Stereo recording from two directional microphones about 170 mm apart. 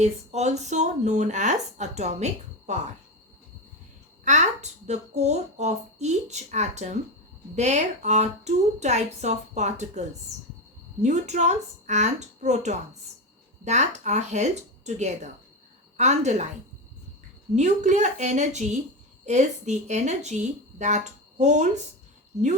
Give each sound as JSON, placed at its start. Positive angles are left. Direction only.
{"t": 0.0, "sound": "a woman's voice", "side_deg": -40}
{"t": 4.2, "sound": "a woman's voice", "side_deg": -45}
{"t": 11.0, "sound": "a woman's voice", "side_deg": -45}
{"t": 17.5, "sound": "a woman's voice", "side_deg": -45}